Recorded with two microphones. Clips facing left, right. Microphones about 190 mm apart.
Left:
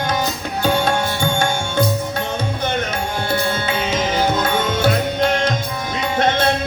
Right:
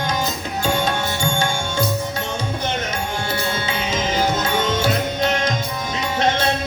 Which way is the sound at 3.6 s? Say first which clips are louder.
Left 3 dB; 55° left (ahead or behind).